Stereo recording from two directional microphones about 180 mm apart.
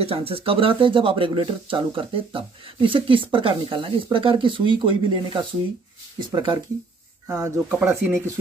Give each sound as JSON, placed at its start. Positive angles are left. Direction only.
{"t": 0.0, "sound": "speech", "side_deg": -30}
{"t": 7.2, "sound": "speech", "side_deg": -15}